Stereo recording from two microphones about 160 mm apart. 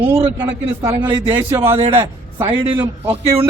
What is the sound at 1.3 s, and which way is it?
Speech, 15° right (ahead or behind).